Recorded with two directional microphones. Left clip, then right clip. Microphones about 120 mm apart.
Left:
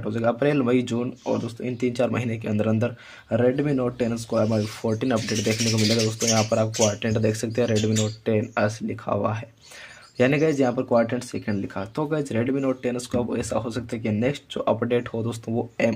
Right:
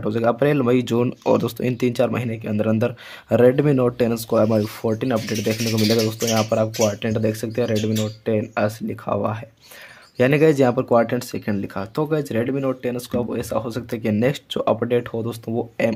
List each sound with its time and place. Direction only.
0.0 s speech: 35° right (ahead or behind)
0.9 s speech: 65° right (ahead or behind)
1.9 s speech: 35° right (ahead or behind)
2.1 s speech: 10° right (ahead or behind)
3.3 s speech: 45° right (ahead or behind)
4.8 s speech: 15° right (ahead or behind)
10.4 s speech: 35° right (ahead or behind); by 15.9 s 15° right (ahead or behind)